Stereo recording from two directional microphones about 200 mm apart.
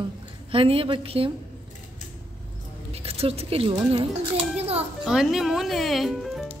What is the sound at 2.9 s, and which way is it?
A child's voice, 30° right (ahead or behind).